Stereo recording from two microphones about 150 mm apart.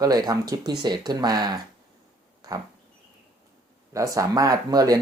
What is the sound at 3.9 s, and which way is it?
Speech, 20° right (ahead or behind).